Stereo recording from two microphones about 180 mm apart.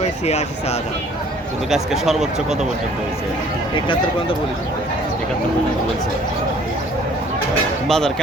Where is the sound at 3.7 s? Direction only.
25° left (ahead or behind).